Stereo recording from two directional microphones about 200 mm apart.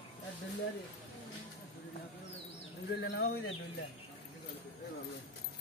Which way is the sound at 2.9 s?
55° left (ahead or behind).